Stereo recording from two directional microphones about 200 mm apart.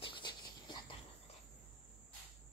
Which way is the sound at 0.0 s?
20° left (ahead or behind).